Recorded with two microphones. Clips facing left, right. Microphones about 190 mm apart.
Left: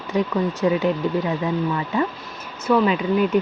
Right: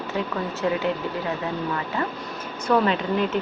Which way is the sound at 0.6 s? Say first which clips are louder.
Left 4 dB; 20° left (ahead or behind).